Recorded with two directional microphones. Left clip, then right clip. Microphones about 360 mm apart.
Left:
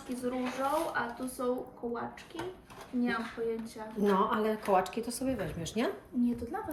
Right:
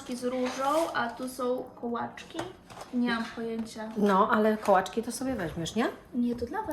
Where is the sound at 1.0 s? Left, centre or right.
Right.